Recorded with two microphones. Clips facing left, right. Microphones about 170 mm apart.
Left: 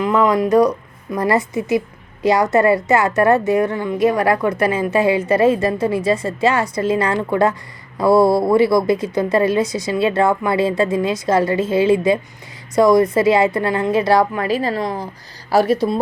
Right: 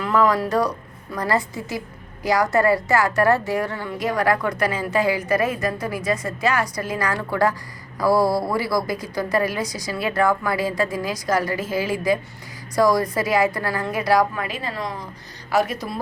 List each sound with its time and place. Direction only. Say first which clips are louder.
0.0 s a woman's voice: left 4 dB; 20° left (ahead or behind)